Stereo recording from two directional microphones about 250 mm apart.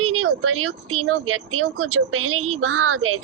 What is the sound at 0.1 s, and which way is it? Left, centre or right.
A woman's voice, right.